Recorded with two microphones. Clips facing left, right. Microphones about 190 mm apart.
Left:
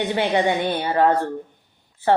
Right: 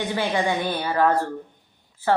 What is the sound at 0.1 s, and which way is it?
Speech, 25° left (ahead or behind).